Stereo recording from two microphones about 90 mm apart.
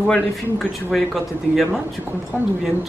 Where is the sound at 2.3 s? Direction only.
20° left (ahead or behind).